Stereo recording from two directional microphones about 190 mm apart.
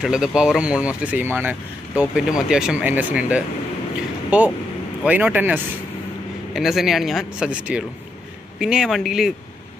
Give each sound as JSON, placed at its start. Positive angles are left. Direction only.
{"t": 0.0, "sound": "speech", "side_deg": -5}